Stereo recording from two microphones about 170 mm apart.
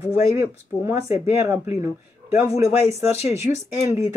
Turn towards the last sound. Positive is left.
turn(degrees=-15)  # may be behind; listen again after turning